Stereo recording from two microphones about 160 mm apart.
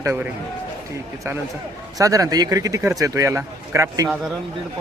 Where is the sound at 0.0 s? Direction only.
15° right (ahead or behind).